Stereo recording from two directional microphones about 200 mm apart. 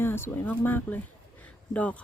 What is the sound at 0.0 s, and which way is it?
Speech, 10° left (ahead or behind).